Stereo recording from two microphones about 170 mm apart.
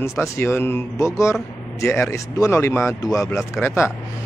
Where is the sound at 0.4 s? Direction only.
15° left (ahead or behind).